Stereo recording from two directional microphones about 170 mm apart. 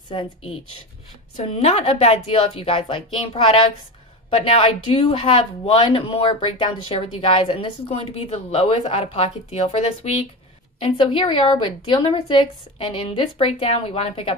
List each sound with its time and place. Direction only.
0.1 s speech: 30° left (ahead or behind)